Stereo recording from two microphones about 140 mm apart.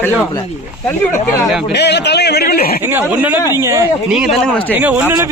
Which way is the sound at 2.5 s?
90° left.